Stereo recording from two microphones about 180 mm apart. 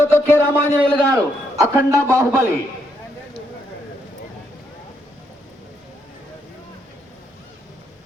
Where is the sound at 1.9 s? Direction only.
15° right (ahead or behind).